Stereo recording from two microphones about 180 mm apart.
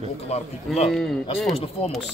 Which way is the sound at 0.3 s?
35° left (ahead or behind).